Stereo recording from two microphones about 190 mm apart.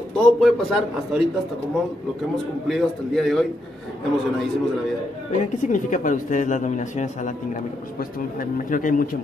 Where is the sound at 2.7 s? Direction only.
Centre (ahead or behind).